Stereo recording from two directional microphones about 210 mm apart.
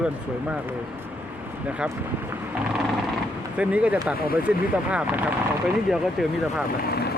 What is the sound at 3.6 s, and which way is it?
Speech, 5° right (ahead or behind).